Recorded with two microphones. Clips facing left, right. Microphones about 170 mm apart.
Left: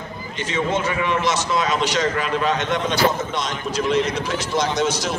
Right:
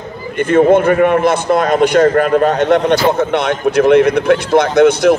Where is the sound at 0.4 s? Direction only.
55° right (ahead or behind).